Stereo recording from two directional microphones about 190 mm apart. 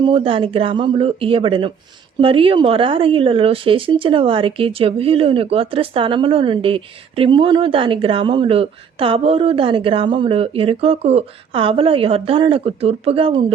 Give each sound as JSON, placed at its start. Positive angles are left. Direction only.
{"t": 0.0, "sound": "speech", "side_deg": -30}